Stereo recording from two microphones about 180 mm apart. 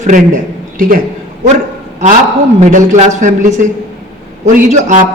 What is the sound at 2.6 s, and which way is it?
Speech, 40° right (ahead or behind).